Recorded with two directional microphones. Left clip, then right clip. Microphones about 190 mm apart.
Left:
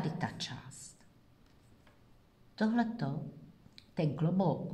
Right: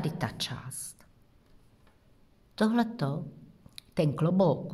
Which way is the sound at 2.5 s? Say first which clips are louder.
Right 5 dB; 45° right (ahead or behind).